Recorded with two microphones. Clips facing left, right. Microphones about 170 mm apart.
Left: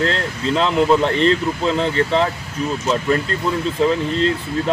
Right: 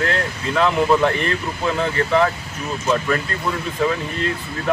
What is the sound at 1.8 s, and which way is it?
Speech, 25° left (ahead or behind).